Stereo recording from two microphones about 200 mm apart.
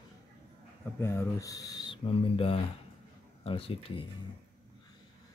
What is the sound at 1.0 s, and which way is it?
Speech, 15° left (ahead or behind).